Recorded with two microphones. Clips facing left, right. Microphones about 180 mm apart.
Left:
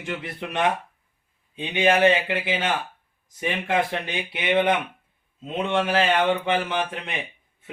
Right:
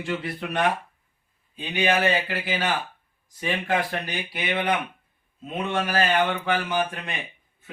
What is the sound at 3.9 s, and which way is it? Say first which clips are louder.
Speech: left 2 dB; 25° left (ahead or behind).